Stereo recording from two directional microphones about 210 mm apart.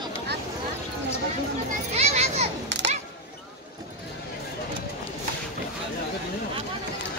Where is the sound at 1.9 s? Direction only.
30° right (ahead or behind).